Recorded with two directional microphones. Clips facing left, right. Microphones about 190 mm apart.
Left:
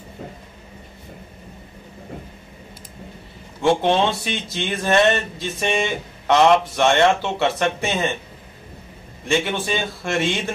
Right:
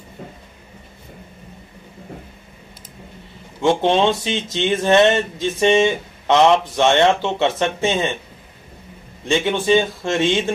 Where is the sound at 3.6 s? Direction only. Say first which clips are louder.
Right 2 dB; 20° right (ahead or behind).